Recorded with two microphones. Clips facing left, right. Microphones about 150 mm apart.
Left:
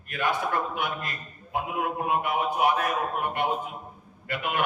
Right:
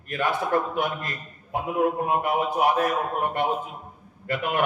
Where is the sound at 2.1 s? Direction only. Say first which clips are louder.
Right 2 dB; 35° right (ahead or behind).